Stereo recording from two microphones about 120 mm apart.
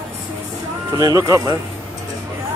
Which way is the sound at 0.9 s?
30° right (ahead or behind).